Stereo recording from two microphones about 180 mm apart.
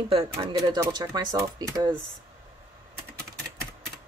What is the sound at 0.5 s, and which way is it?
Speech, 20° right (ahead or behind).